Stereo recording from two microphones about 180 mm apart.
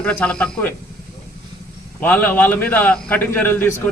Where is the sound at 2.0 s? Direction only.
10° left (ahead or behind).